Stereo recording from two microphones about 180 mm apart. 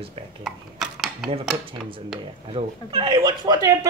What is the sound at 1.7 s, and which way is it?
Speech, 30° right (ahead or behind).